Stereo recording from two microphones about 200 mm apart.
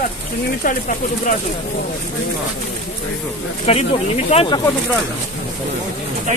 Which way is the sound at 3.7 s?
30° left (ahead or behind).